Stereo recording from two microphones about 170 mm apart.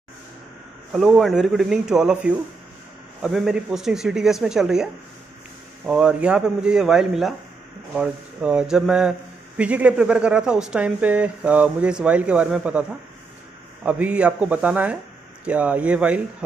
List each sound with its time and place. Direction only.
0.9 s speech: centre (ahead or behind)
5.9 s speech: 5° right (ahead or behind)
13.8 s speech: 10° right (ahead or behind)